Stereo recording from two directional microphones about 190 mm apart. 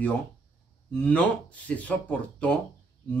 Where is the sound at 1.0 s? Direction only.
5° left (ahead or behind).